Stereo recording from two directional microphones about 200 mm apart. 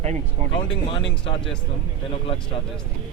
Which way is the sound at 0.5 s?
25° left (ahead or behind).